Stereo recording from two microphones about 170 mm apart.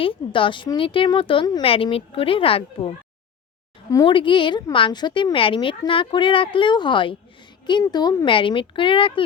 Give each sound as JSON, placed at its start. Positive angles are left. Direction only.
{"t": 0.0, "sound": "a woman's voice", "side_deg": 30}